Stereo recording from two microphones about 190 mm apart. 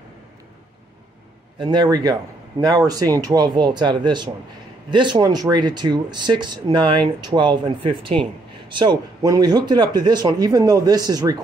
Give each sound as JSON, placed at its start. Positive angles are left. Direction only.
{"t": 1.6, "sound": "speech", "side_deg": -25}